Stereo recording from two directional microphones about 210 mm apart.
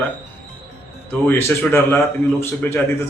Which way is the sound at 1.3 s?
10° left (ahead or behind).